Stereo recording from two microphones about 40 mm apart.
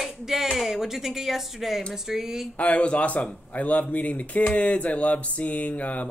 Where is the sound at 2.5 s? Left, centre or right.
Left.